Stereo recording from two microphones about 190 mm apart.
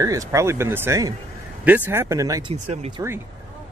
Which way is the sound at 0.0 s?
15° right (ahead or behind).